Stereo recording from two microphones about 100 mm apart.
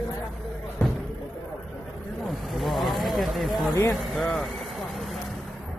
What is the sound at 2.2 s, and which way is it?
Vehicle, centre (ahead or behind).